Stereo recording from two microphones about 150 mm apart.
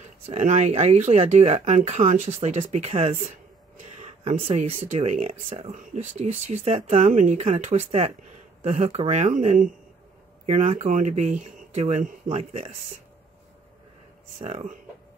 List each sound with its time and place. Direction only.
0.3 s speech: 55° right (ahead or behind)
7.1 s speech: 55° right (ahead or behind)
10.4 s speech: 45° right (ahead or behind)
14.4 s speech: 45° right (ahead or behind)